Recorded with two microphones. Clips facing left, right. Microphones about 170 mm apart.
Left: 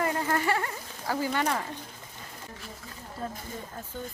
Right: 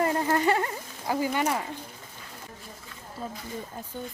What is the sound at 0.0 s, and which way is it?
Insect, 25° right (ahead or behind).